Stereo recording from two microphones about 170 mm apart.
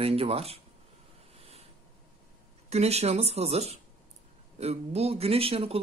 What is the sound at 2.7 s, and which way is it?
Speech, 40° right (ahead or behind).